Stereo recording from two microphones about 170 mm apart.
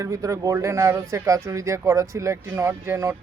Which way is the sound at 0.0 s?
15° right (ahead or behind).